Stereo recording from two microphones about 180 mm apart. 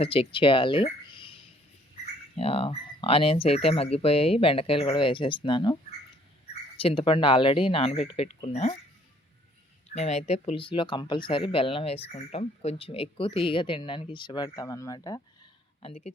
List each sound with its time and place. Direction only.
0.0 s speech: 30° left (ahead or behind)
6.7 s speech: 30° left (ahead or behind)
9.9 s speech: 40° left (ahead or behind); by 15.2 s 20° left (ahead or behind)
15.8 s speech: 35° left (ahead or behind)